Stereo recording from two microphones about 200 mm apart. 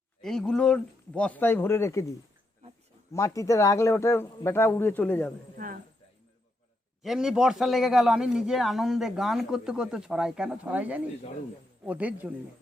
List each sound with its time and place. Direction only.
0.2 s a man's voice: centre (ahead or behind)
5.5 s speech: 45° right (ahead or behind)
7.0 s a man's voice: centre (ahead or behind)